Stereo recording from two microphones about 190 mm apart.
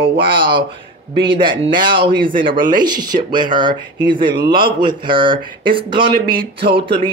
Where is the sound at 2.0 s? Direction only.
25° right (ahead or behind).